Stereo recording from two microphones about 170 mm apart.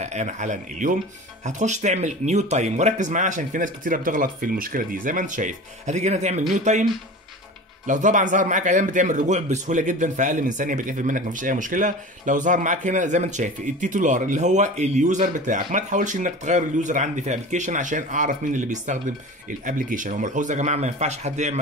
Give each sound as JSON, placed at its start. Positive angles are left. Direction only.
{"t": 0.0, "sound": "speech", "side_deg": -40}